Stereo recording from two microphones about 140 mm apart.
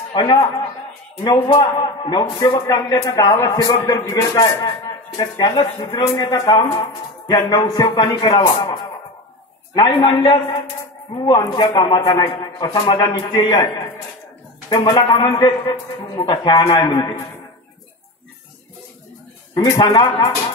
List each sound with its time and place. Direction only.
0.1 s a man's voice: 25° left (ahead or behind)
1.6 s a man's voice: 35° left (ahead or behind)
9.8 s a man's voice: 35° left (ahead or behind)
19.5 s a man's voice: 30° left (ahead or behind)